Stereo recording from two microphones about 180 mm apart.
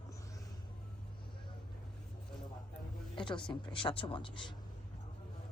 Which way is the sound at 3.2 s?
25° left (ahead or behind).